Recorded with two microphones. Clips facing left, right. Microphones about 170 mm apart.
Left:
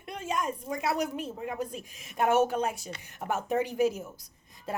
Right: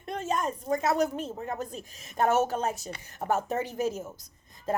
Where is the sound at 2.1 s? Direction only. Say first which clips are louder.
Even; 40° right (ahead or behind).